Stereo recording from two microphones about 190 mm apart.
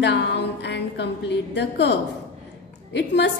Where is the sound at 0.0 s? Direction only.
65° left (ahead or behind).